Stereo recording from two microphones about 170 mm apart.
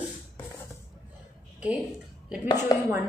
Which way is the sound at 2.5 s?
20° left (ahead or behind).